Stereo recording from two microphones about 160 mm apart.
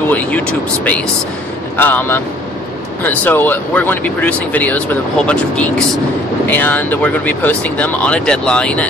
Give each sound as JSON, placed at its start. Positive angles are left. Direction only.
{"t": 0.1, "sound": "speech", "side_deg": 10}